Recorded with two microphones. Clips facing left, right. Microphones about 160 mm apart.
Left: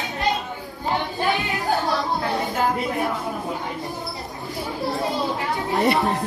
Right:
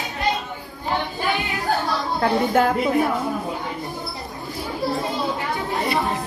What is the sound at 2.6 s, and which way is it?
Speech, 60° right (ahead or behind).